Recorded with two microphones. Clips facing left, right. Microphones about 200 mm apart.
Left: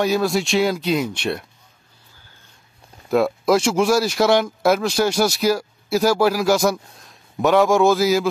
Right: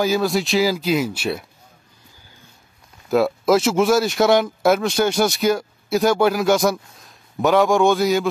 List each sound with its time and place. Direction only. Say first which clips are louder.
0.0 s speech: even; centre (ahead or behind)
3.1 s speech: right 1 dB; centre (ahead or behind)